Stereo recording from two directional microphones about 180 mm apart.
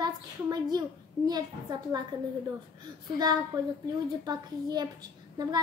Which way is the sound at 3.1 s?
20° right (ahead or behind).